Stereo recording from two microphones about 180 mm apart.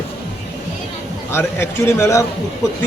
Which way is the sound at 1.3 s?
15° left (ahead or behind).